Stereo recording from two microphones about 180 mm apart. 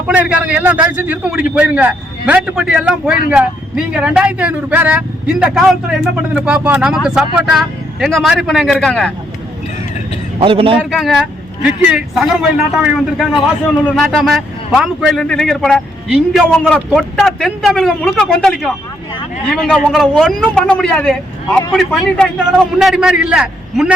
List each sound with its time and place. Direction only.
0.1 s a man's voice: 10° right (ahead or behind)
10.4 s a man's voice: 30° right (ahead or behind)
10.8 s a man's voice: centre (ahead or behind)